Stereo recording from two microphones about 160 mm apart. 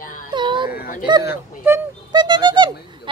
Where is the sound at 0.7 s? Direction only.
65° left (ahead or behind).